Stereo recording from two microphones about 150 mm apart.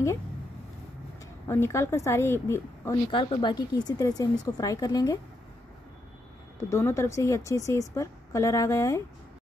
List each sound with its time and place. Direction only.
1.5 s a woman's voice: 15° left (ahead or behind)
3.1 s speech: 35° left (ahead or behind)
6.7 s speech: 20° left (ahead or behind)